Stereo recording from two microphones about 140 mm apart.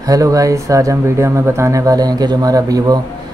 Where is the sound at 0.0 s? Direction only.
25° right (ahead or behind).